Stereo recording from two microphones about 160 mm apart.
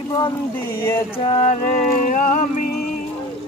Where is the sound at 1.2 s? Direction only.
40° left (ahead or behind).